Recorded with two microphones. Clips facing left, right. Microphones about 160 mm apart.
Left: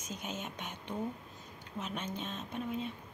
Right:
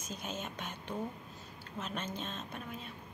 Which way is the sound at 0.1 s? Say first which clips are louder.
Even; 15° left (ahead or behind).